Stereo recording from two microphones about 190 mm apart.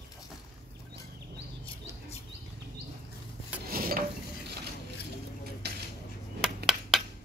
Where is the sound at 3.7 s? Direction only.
50° right (ahead or behind).